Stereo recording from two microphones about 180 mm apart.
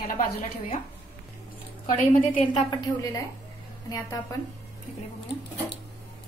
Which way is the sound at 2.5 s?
25° left (ahead or behind).